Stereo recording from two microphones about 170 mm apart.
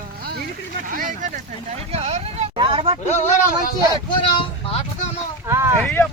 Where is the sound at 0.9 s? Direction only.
50° right (ahead or behind); by 3.0 s 35° right (ahead or behind).